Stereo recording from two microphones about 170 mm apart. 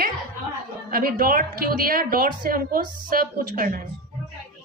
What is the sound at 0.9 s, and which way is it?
A woman's voice, 60° right (ahead or behind).